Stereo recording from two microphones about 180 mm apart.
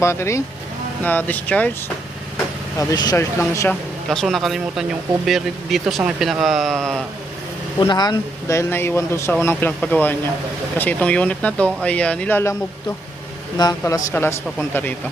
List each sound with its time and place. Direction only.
0.0 s speech: 15° left (ahead or behind)
2.7 s speech: 20° left (ahead or behind)
4.1 s speech: centre (ahead or behind)
7.8 s speech: 25° left (ahead or behind)
13.6 s speech: 20° left (ahead or behind)